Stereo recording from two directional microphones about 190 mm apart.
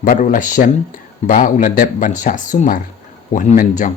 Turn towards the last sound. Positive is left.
turn(degrees=40)  # may be behind; listen again after turning